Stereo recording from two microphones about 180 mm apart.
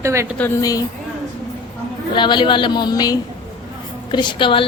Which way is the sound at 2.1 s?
25° left (ahead or behind).